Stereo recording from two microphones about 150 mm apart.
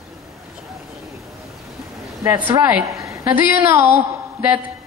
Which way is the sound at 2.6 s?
20° right (ahead or behind).